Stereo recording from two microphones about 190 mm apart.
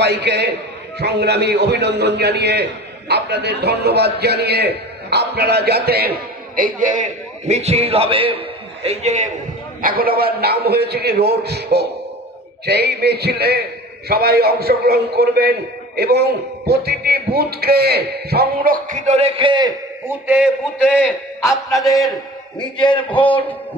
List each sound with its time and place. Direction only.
0.0 s a man's voice: 60° right (ahead or behind); by 9.3 s 35° right (ahead or behind)
9.8 s a man's voice: 50° right (ahead or behind); by 19.7 s 25° right (ahead or behind)
20.1 s a man's voice: 10° right (ahead or behind)
21.0 s a man's voice: 15° left (ahead or behind)
23.0 s a man's voice: 10° left (ahead or behind)